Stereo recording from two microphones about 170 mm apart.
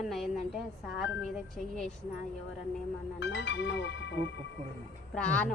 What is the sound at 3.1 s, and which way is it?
Speech, 90° left.